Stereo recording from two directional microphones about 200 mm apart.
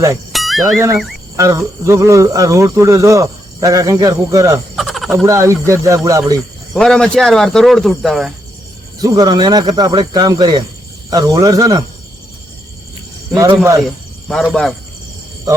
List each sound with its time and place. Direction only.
0.3 s a sound: centre (ahead or behind)
1.4 s speech: 15° right (ahead or behind)
4.8 s frog: centre (ahead or behind)
5.1 s speech: 15° right (ahead or behind)
6.7 s speech: 5° left (ahead or behind)
9.0 s speech: 20° right (ahead or behind)
13.3 s speech: 15° right (ahead or behind)
13.8 s speech: centre (ahead or behind)
15.5 s speech: 15° right (ahead or behind)